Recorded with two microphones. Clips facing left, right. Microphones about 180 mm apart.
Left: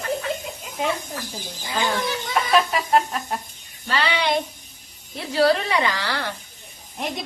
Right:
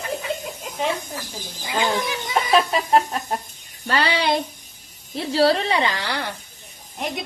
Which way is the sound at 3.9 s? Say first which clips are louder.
Right 2 dB; 40° right (ahead or behind).